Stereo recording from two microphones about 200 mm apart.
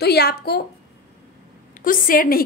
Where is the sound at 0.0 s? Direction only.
55° left (ahead or behind).